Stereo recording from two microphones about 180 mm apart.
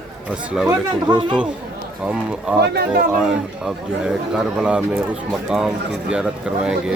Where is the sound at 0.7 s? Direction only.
25° right (ahead or behind).